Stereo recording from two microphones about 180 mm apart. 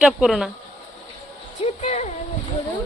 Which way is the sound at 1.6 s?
40° left (ahead or behind).